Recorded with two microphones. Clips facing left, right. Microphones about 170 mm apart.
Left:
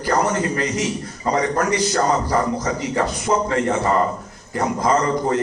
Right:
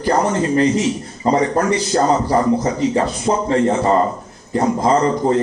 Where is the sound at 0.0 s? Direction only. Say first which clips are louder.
Right 3 dB; 25° right (ahead or behind).